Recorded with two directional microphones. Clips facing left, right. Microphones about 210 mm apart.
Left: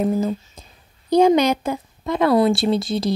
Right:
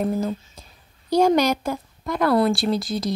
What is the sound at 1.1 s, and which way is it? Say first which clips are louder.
Speech: left 3 dB; 20° left (ahead or behind).